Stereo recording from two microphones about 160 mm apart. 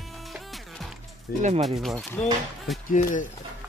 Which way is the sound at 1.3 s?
65° left (ahead or behind).